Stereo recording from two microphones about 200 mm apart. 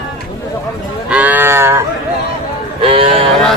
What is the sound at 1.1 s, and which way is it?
Cattle, 10° right (ahead or behind).